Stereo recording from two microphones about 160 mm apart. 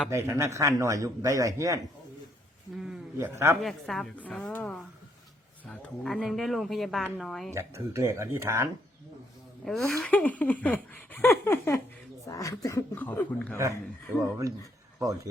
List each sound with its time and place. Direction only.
0.1 s a man's voice: 15° right (ahead or behind)
2.7 s speech: centre (ahead or behind)
3.2 s speech: 15° right (ahead or behind)
3.6 s speech: centre (ahead or behind)
7.5 s speech: 20° right (ahead or behind)
9.6 s speech: 5° left (ahead or behind)